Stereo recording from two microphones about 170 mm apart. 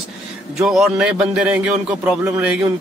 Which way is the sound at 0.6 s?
5° right (ahead or behind).